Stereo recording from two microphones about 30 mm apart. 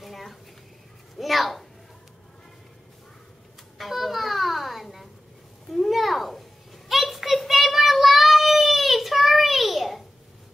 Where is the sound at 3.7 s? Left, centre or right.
Centre.